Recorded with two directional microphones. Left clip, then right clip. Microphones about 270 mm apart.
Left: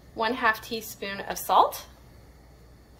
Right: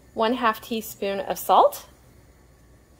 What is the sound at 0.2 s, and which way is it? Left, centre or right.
Speech, right.